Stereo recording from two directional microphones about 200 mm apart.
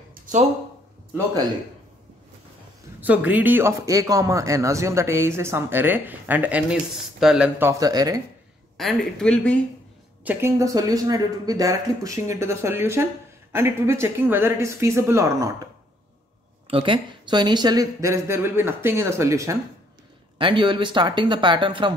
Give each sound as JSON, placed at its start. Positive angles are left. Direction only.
{"t": 0.1, "sound": "a sound", "side_deg": -40}
{"t": 3.0, "sound": "speech", "side_deg": -5}
{"t": 8.7, "sound": "speech", "side_deg": 0}
{"t": 10.2, "sound": "speech", "side_deg": -15}
{"t": 16.6, "sound": "speech", "side_deg": -25}